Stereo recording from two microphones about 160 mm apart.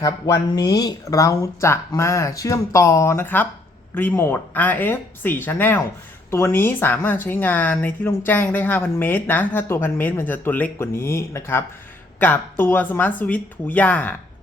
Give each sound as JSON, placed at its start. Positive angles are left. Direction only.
{"t": 0.0, "sound": "speech", "side_deg": 20}